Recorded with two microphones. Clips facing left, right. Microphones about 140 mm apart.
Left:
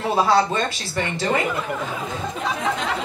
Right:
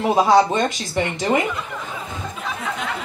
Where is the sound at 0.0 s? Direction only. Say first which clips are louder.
Right 3 dB; 15° right (ahead or behind).